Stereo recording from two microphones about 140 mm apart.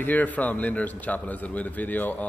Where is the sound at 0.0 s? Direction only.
10° left (ahead or behind).